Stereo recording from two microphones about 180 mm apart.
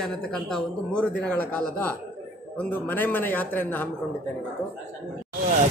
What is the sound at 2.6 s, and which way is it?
A man's voice, 10° left (ahead or behind).